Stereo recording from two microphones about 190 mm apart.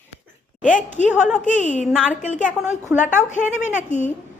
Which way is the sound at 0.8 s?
40° left (ahead or behind).